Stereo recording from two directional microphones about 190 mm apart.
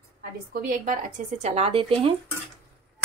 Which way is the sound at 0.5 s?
50° right (ahead or behind).